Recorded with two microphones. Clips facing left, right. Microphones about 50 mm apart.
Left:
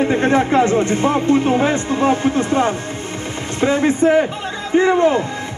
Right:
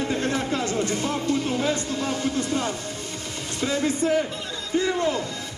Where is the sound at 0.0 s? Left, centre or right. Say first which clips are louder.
Left 10 dB; left.